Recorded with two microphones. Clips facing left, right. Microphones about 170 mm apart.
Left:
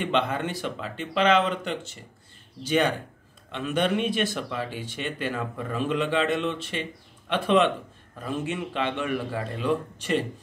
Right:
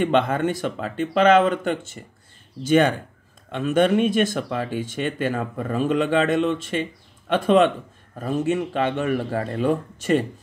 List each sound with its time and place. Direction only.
0.0 s speech: 50° right (ahead or behind)